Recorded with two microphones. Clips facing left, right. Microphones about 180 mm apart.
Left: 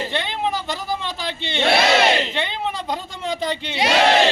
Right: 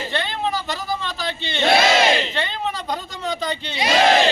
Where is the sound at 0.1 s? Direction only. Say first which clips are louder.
Even; 15° left (ahead or behind).